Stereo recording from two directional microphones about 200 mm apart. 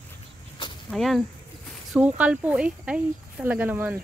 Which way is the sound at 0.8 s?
Centre (ahead or behind).